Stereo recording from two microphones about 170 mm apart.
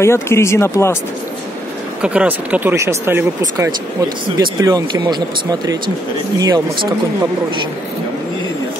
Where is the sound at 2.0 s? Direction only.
5° right (ahead or behind).